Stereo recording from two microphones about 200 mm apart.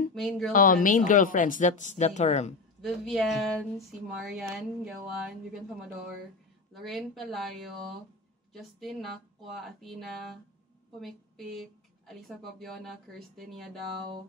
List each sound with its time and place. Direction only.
0.1 s speech: centre (ahead or behind)
0.5 s speech: 40° left (ahead or behind)
2.8 s speech: centre (ahead or behind)
6.7 s speech: centre (ahead or behind)